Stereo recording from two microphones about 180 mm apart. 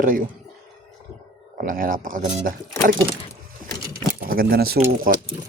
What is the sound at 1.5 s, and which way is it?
Speech, 50° right (ahead or behind).